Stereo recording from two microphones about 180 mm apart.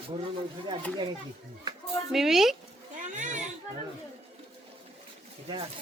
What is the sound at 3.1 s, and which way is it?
Music, 45° right (ahead or behind).